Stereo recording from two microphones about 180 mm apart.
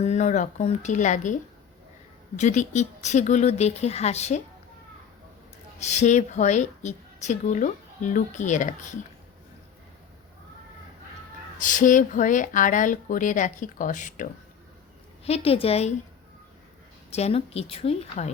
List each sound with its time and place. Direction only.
0.0 s a woman's voice: 40° left (ahead or behind)
5.8 s a woman's voice: 40° left (ahead or behind)
11.6 s speech: 45° left (ahead or behind)
15.2 s a woman's voice: 35° left (ahead or behind)
17.1 s a woman's voice: 35° left (ahead or behind)